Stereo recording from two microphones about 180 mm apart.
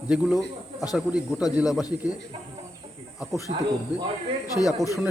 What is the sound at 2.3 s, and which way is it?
Speech, 30° right (ahead or behind).